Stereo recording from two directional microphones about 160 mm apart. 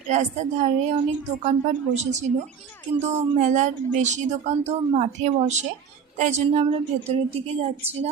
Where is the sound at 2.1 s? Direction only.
45° right (ahead or behind).